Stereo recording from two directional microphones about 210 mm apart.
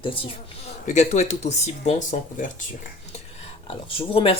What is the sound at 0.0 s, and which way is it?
Speech, 25° left (ahead or behind).